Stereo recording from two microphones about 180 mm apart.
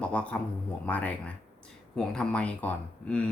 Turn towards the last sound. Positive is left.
turn(degrees=5)  # may be behind; listen again after turning